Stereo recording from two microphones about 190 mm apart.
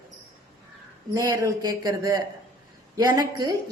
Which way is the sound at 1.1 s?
20° right (ahead or behind).